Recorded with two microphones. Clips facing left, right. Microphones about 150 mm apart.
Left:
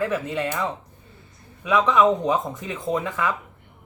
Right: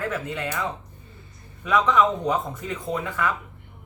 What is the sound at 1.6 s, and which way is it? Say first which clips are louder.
Speech: left 2 dB; 10° left (ahead or behind).